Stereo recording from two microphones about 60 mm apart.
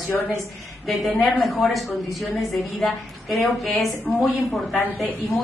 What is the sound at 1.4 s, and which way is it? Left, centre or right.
Speech, centre.